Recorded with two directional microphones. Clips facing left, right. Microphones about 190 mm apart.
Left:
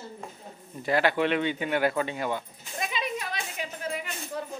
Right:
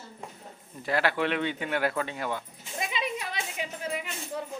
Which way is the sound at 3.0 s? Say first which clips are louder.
Even; 20° right (ahead or behind).